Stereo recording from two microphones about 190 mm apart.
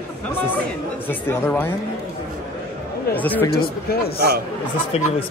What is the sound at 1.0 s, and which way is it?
Speech, 10° left (ahead or behind).